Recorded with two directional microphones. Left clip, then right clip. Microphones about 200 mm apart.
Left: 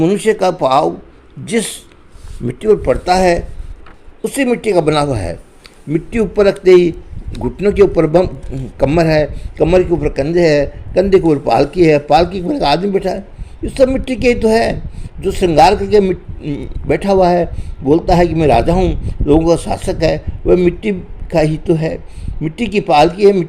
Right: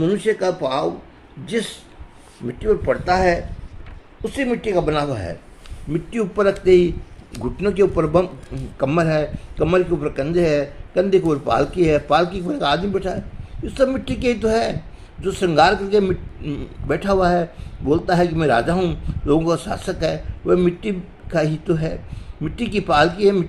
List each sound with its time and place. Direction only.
0.0 s a man's voice: 35° left (ahead or behind); by 23.5 s 20° left (ahead or behind)